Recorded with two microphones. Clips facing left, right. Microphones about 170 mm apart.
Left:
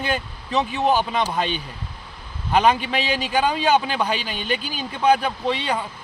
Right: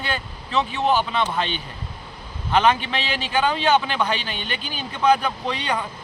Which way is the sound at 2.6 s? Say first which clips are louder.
Left 1 dB; 10° left (ahead or behind).